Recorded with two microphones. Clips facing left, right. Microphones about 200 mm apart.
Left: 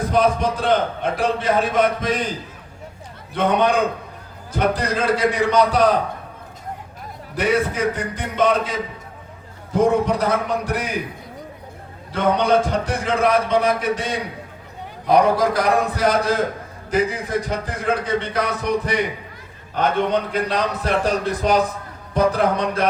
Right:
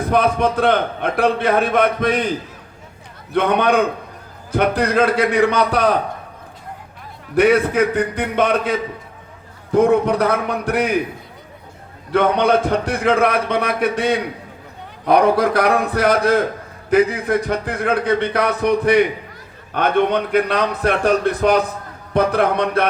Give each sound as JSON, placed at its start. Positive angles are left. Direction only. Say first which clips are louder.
{"t": 0.1, "sound": "a man's voice", "louder": "right 2 dB", "side_deg": -60}
{"t": 3.3, "sound": "a man's voice", "louder": "right 2 dB", "side_deg": -60}
{"t": 7.3, "sound": "a man's voice", "louder": "right 6 dB", "side_deg": -60}
{"t": 12.1, "sound": "a man's voice", "louder": "right 2 dB", "side_deg": -60}